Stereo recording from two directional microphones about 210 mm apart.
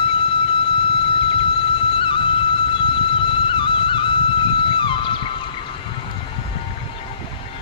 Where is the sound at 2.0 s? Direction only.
25° left (ahead or behind).